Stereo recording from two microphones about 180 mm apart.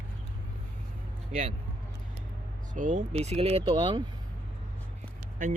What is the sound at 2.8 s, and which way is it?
Speech, 45° right (ahead or behind).